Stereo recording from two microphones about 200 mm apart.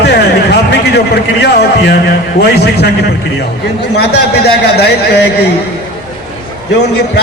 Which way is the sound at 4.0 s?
55° left (ahead or behind).